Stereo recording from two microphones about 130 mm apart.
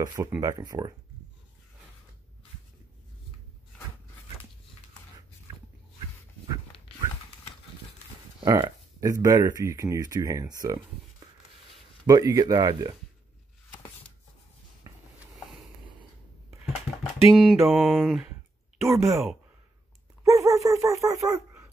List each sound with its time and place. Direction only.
0.0 s speech: 30° right (ahead or behind)
8.5 s speech: 25° right (ahead or behind)
12.1 s speech: 25° right (ahead or behind)
15.3 s a sound: centre (ahead or behind)
17.3 s speech: centre (ahead or behind)
18.9 s speech: 20° right (ahead or behind)
20.2 s a sound: 25° right (ahead or behind)